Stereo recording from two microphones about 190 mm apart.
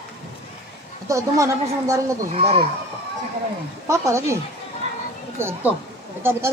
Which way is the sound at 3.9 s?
15° right (ahead or behind).